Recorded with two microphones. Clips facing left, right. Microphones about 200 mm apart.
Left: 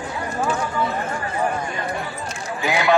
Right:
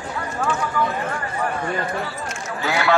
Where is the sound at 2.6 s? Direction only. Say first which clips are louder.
Left 1 dB; 15° left (ahead or behind).